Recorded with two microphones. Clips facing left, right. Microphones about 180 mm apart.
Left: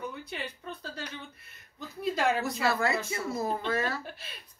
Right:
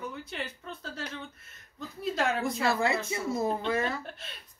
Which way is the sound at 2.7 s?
25° right (ahead or behind).